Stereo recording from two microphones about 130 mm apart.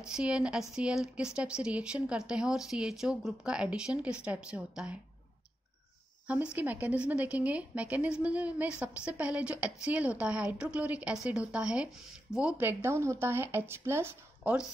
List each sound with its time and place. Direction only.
0.1 s speech: 5° right (ahead or behind)
6.2 s speech: 10° right (ahead or behind)